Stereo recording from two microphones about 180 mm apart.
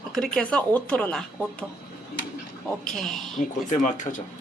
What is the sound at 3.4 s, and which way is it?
Speech, 45° left (ahead or behind).